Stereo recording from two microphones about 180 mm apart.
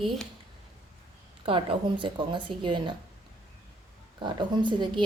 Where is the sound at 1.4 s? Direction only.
30° right (ahead or behind).